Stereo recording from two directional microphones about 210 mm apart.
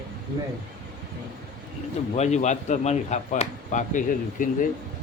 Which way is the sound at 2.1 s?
35° left (ahead or behind).